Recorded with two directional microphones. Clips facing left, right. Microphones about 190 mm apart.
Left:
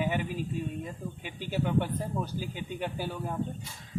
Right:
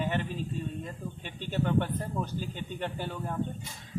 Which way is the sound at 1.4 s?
10° left (ahead or behind).